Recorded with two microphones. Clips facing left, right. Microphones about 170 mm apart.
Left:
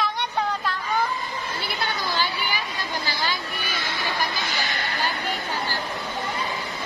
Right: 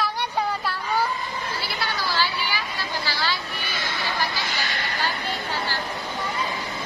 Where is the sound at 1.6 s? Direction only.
20° left (ahead or behind).